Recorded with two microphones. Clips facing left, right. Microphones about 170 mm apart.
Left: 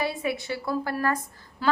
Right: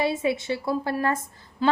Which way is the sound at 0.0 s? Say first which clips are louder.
Right 4 dB; 25° right (ahead or behind).